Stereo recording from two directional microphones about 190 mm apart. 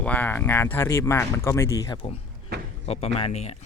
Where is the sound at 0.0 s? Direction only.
10° left (ahead or behind).